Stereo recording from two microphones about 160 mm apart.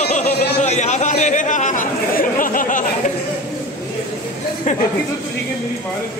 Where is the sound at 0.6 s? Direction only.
45° left (ahead or behind).